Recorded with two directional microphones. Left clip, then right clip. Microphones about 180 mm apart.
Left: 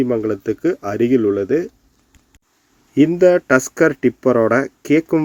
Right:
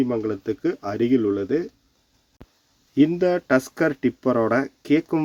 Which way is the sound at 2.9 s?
10° left (ahead or behind).